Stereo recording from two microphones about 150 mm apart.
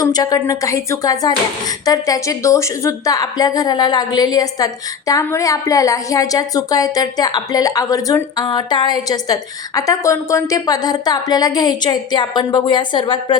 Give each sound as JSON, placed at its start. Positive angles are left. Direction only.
{"t": 0.0, "sound": "a woman's voice", "side_deg": 25}